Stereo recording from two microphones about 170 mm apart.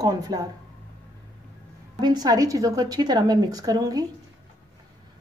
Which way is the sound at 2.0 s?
25° right (ahead or behind).